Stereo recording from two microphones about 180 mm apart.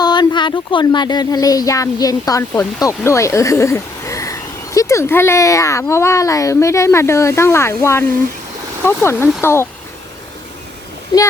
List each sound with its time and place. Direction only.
0.0 s speech: 25° left (ahead or behind)